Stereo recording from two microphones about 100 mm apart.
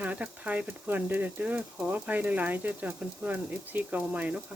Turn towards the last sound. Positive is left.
turn(degrees=-15)  # may be behind; listen again after turning